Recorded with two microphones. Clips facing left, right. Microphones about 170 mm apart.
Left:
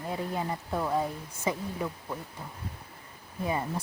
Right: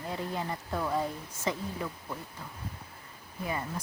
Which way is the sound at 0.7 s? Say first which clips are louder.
Left 2 dB; 10° left (ahead or behind).